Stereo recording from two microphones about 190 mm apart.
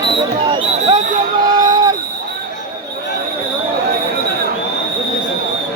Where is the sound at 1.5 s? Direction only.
20° right (ahead or behind).